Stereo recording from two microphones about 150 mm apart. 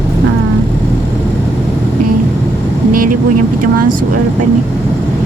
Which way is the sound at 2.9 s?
70° right (ahead or behind).